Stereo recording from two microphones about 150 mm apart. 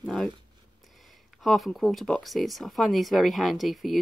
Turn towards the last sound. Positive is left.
turn(degrees=0)  # may be behind; listen again after turning